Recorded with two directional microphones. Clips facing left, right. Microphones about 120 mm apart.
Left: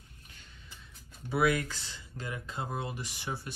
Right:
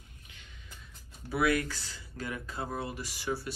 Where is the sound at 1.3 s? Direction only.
20° left (ahead or behind).